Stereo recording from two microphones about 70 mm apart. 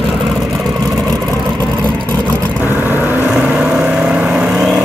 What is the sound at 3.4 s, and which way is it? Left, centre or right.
Vehicle, centre.